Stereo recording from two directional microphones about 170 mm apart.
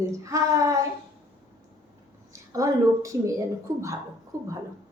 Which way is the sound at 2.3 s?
20° right (ahead or behind).